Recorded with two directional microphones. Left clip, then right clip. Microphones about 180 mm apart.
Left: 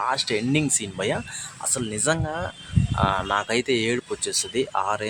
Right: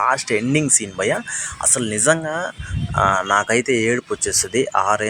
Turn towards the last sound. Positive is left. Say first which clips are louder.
# right 7 dB
turn(degrees=-20)  # may be behind; listen again after turning